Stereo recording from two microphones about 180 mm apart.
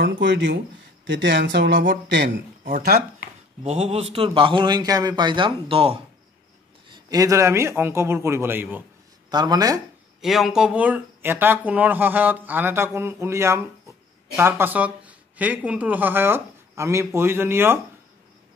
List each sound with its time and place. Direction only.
0.0 s speech: 75° right (ahead or behind)
2.2 s a man's voice: 50° right (ahead or behind)
3.6 s a man's voice: 35° right (ahead or behind)
6.9 s speech: 20° right (ahead or behind)
9.3 s a man's voice: 20° right (ahead or behind)
10.2 s speech: centre (ahead or behind)